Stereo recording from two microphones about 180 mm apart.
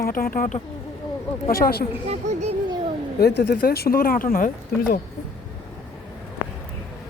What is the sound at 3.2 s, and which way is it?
Speech, 65° left (ahead or behind).